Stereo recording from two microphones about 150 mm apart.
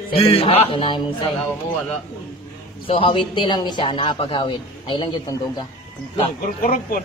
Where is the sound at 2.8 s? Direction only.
40° left (ahead or behind).